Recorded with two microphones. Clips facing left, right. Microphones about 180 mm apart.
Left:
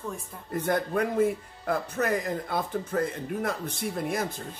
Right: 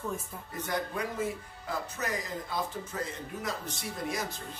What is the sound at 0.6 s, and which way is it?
Speech, 55° left (ahead or behind).